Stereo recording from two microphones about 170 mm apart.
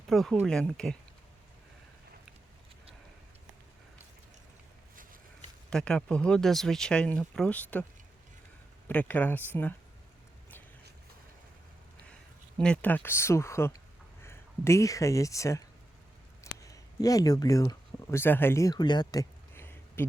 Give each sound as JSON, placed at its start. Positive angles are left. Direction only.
{"t": 0.1, "sound": "speech", "side_deg": 0}
{"t": 5.7, "sound": "speech", "side_deg": 5}
{"t": 8.9, "sound": "speech", "side_deg": 10}
{"t": 12.5, "sound": "speech", "side_deg": 5}
{"t": 16.4, "sound": "a sound", "side_deg": 20}